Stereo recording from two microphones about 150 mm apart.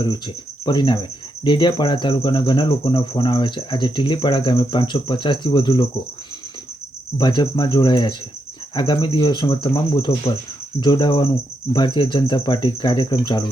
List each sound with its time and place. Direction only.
0.6 s speech: 30° left (ahead or behind)
7.2 s speech: 30° left (ahead or behind)